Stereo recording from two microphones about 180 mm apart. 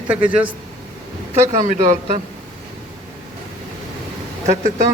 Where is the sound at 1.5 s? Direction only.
45° right (ahead or behind).